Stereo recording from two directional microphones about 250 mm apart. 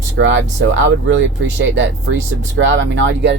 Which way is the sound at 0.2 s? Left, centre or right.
Right.